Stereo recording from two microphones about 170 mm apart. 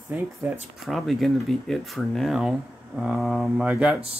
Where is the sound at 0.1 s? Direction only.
10° right (ahead or behind).